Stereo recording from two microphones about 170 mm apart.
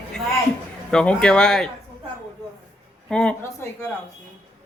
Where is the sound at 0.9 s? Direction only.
5° left (ahead or behind).